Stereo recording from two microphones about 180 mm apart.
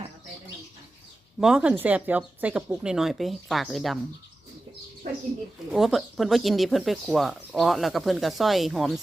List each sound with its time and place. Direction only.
1.4 s speech: 5° right (ahead or behind)
5.0 s speech: 50° right (ahead or behind)
5.7 s speech: centre (ahead or behind)